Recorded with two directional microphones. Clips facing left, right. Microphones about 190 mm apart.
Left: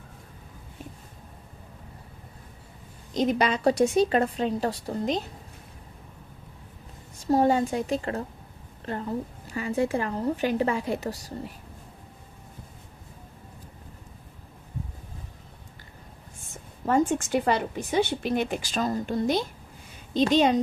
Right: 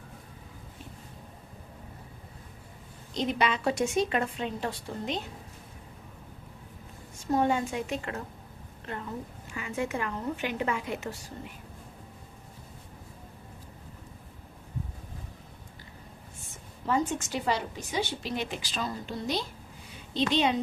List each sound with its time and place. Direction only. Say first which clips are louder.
3.2 s a woman's voice: left 4 dB; 45° left (ahead or behind)
7.2 s a woman's voice: left 5 dB; 35° left (ahead or behind)
16.8 s speech: left 5 dB; 50° left (ahead or behind)